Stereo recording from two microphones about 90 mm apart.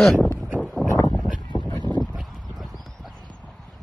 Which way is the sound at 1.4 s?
50° left (ahead or behind).